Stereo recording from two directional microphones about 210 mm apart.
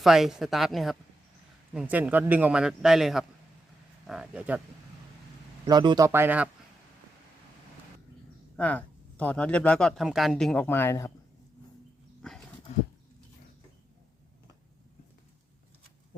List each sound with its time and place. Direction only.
0.0 s speech: centre (ahead or behind)
5.6 s speech: 20° right (ahead or behind)
6.1 s speech: 10° right (ahead or behind)
8.5 s speech: 5° left (ahead or behind)
12.2 s horse: 5° left (ahead or behind)